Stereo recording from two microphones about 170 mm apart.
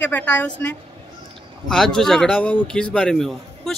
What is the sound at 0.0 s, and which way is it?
A woman's voice, 10° left (ahead or behind).